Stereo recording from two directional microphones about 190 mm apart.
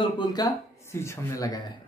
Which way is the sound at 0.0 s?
20° left (ahead or behind).